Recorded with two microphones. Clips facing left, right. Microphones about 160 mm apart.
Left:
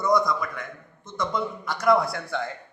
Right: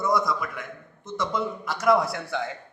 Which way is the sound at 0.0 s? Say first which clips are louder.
Left 2 dB; centre (ahead or behind).